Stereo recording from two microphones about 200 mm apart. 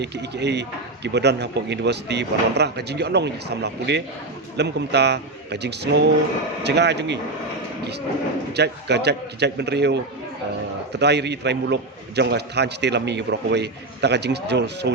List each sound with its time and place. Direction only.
0.0 s a man's voice: 60° right (ahead or behind)
8.5 s a man's voice: 55° right (ahead or behind)